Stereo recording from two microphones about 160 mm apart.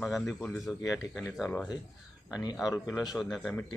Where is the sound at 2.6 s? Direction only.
25° left (ahead or behind).